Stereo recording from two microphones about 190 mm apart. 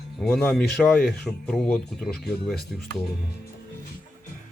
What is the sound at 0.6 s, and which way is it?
Speech, 55° left (ahead or behind).